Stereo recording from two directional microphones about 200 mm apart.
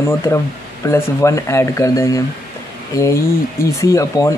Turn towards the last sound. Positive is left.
turn(degrees=15)  # may be behind; listen again after turning